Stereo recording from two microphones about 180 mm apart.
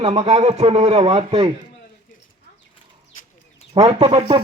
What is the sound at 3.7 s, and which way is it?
Speech, 35° right (ahead or behind).